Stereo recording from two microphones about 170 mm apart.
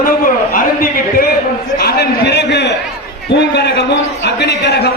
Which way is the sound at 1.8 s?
70° left (ahead or behind).